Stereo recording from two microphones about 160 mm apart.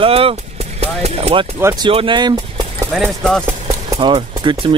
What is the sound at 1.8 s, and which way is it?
Speech, 30° right (ahead or behind).